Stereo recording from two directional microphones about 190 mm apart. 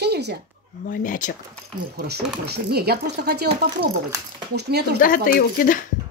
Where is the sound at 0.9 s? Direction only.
45° left (ahead or behind).